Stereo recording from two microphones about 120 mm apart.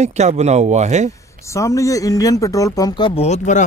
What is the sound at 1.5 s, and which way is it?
Speech, 25° left (ahead or behind).